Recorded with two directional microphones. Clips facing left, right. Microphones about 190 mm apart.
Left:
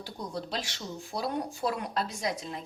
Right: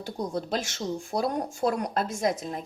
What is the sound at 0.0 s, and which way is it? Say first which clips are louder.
Speech: right 6 dB; 45° right (ahead or behind).